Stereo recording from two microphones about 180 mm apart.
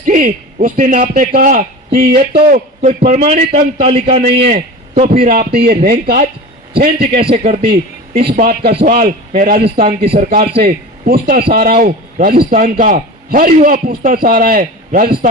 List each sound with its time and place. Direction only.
0.0 s a man's voice: 45° right (ahead or behind)
3.5 s a man's voice: 35° right (ahead or behind)
5.2 s a man's voice: 55° right (ahead or behind)
7.2 s a man's voice: 30° right (ahead or behind)
7.6 s a man's voice: 60° right (ahead or behind)